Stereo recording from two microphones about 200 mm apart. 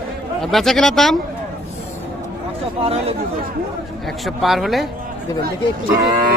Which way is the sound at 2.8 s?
30° right (ahead or behind).